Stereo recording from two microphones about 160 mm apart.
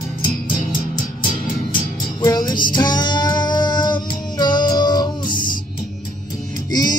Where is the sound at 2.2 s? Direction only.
25° left (ahead or behind).